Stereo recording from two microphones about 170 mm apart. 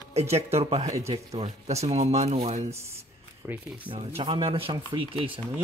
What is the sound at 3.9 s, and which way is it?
Speech, 30° right (ahead or behind).